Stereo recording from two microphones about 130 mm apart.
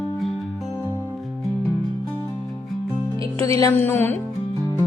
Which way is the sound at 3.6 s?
20° left (ahead or behind).